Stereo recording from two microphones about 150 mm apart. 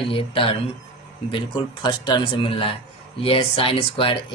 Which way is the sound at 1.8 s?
30° left (ahead or behind).